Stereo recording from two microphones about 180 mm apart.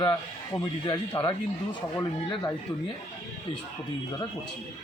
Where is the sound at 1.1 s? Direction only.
20° left (ahead or behind).